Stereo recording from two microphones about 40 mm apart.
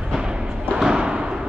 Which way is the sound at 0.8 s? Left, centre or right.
Right.